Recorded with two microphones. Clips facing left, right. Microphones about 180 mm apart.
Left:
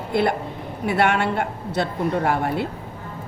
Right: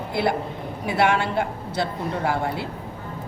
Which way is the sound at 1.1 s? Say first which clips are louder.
Left 1 dB; 60° left (ahead or behind).